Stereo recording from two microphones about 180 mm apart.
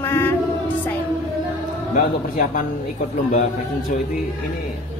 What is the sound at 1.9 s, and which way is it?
Speech, 50° left (ahead or behind).